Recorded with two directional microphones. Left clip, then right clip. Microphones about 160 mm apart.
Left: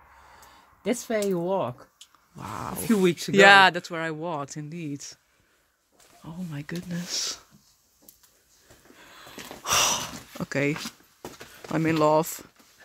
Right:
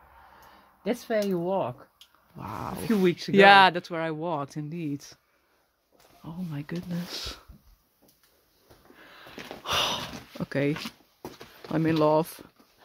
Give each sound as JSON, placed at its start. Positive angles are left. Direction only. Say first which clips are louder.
{"t": 1.0, "sound": "speech", "louder": "even", "side_deg": 75}
{"t": 2.3, "sound": "speech", "louder": "left 1 dB", "side_deg": 0}
{"t": 3.0, "sound": "speech", "louder": "left 1 dB", "side_deg": 80}
{"t": 3.3, "sound": "speech", "louder": "left 1 dB", "side_deg": 0}
{"t": 6.2, "sound": "speech", "louder": "even", "side_deg": -5}
{"t": 9.6, "sound": "a sound", "louder": "left 3 dB", "side_deg": 5}
{"t": 11.7, "sound": "speech", "louder": "left 1 dB", "side_deg": 0}